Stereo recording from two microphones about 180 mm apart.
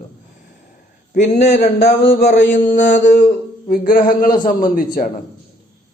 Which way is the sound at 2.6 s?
45° left (ahead or behind).